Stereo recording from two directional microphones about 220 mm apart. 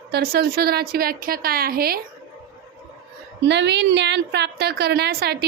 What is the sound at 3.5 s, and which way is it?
A woman's voice, 50° right (ahead or behind).